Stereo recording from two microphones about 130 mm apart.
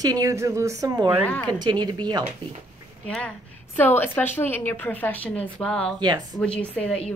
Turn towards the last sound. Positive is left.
turn(degrees=10)  # may be behind; listen again after turning